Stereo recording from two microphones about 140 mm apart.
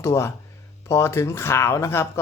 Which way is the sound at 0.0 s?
20° left (ahead or behind).